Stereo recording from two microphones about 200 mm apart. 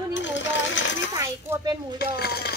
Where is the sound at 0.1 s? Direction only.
65° left (ahead or behind).